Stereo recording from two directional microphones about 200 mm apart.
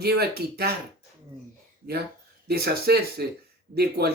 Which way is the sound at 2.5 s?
50° right (ahead or behind).